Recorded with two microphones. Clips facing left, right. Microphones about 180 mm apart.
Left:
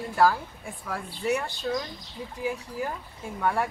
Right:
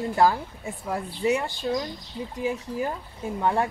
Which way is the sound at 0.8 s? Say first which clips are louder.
Right 4 dB; 20° right (ahead or behind).